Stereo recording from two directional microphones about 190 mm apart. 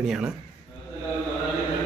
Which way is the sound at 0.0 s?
5° right (ahead or behind).